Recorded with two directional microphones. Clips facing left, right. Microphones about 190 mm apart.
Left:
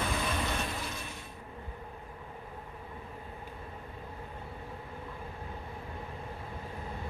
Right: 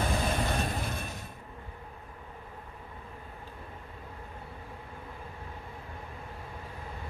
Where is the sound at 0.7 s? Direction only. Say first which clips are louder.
Right 4 dB; 55° right (ahead or behind).